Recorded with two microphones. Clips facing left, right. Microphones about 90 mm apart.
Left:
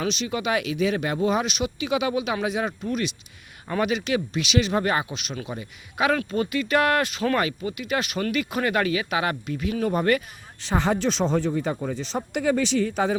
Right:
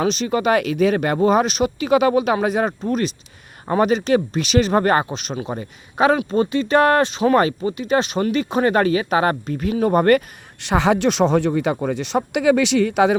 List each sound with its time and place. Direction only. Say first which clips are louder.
0.0 s speech: right 7 dB; 40° right (ahead or behind); by 7.3 s 25° right (ahead or behind)
7.3 s speech: right 8 dB; 35° right (ahead or behind)
10.6 s speech: right 6 dB; 80° right